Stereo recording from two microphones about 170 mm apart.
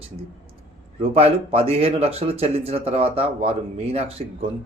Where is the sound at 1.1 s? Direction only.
35° right (ahead or behind).